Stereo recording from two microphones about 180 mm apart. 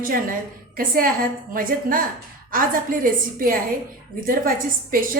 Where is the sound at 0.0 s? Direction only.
50° right (ahead or behind).